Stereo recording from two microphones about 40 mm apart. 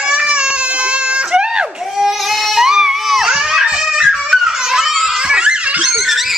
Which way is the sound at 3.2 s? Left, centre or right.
Centre.